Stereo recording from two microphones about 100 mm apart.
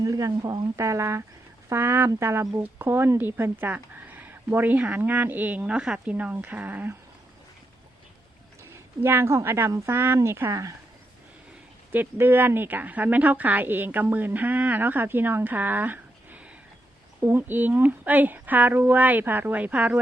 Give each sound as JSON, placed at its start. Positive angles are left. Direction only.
{"t": 0.0, "sound": "speech", "side_deg": -35}
{"t": 0.9, "sound": "speech", "side_deg": -30}
{"t": 9.0, "sound": "speech", "side_deg": -25}
{"t": 11.9, "sound": "speech", "side_deg": -20}